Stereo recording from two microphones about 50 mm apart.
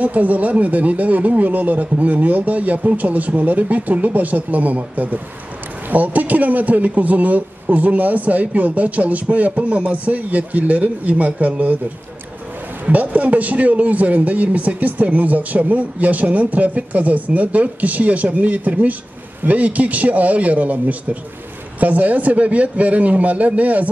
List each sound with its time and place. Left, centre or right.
0.0 s speech: right
12.8 s speech: right